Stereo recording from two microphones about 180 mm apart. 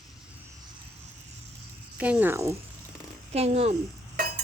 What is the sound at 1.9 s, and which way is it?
Speech, 5° right (ahead or behind).